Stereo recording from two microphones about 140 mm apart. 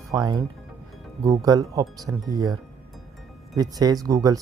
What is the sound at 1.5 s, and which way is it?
Speech, 25° right (ahead or behind).